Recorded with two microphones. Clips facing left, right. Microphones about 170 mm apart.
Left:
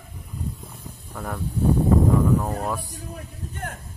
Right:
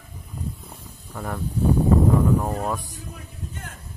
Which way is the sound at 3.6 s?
55° left (ahead or behind).